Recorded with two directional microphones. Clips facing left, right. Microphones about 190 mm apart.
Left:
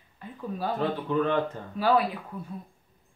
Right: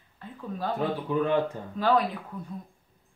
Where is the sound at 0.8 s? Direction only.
10° right (ahead or behind).